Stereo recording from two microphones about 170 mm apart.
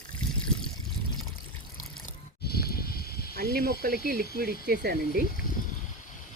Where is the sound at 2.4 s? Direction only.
65° left (ahead or behind).